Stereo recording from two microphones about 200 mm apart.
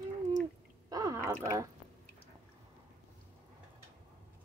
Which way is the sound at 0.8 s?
20° right (ahead or behind).